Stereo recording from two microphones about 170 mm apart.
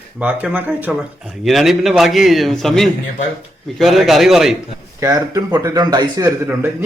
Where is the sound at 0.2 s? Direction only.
10° right (ahead or behind).